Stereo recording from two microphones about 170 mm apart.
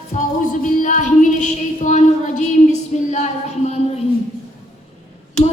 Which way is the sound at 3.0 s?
40° left (ahead or behind).